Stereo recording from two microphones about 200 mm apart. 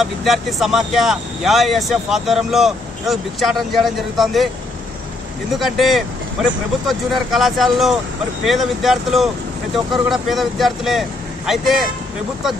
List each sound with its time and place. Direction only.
0.0 s speech: centre (ahead or behind)
5.5 s speech: centre (ahead or behind)